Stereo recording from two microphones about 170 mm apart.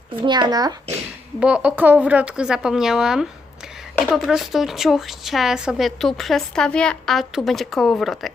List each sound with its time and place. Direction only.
0.2 s a child's voice: 25° right (ahead or behind)
1.4 s a woman's voice: 5° right (ahead or behind)